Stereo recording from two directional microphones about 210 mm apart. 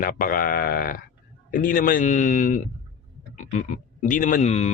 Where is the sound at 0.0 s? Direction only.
40° left (ahead or behind).